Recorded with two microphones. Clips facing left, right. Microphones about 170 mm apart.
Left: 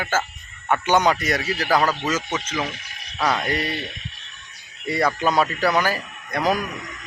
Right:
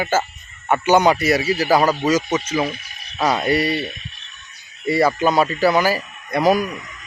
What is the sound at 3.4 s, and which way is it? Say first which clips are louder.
Speech: right 6 dB; 10° right (ahead or behind).